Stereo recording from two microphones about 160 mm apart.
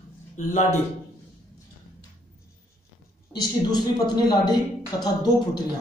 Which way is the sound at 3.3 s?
25° left (ahead or behind).